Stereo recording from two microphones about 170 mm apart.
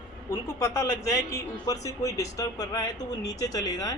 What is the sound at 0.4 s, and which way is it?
Speech, 15° left (ahead or behind).